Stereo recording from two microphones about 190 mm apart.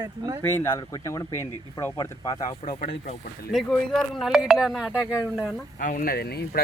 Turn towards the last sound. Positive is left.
turn(degrees=55)  # may be behind; listen again after turning